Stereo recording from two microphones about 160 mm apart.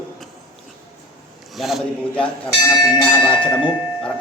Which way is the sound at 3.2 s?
30° left (ahead or behind).